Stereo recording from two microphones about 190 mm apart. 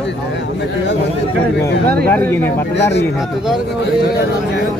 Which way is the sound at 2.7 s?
65° left (ahead or behind).